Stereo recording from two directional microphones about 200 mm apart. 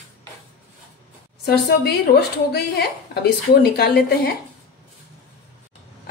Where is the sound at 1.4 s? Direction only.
50° left (ahead or behind).